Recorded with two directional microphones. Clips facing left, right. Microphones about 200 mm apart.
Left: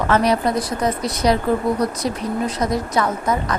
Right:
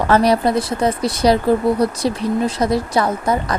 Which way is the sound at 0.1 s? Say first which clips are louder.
Right 4 dB; 35° right (ahead or behind).